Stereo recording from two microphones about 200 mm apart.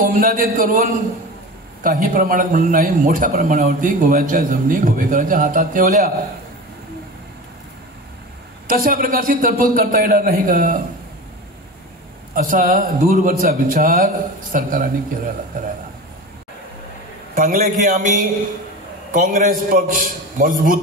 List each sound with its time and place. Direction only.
0.0 s a man's voice: 45° right (ahead or behind)
8.6 s a man's voice: 45° right (ahead or behind)
12.4 s a man's voice: 40° right (ahead or behind)
17.4 s a man's voice: 45° right (ahead or behind)